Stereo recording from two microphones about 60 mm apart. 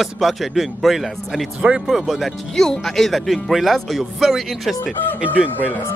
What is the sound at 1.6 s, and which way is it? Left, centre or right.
Speech, right.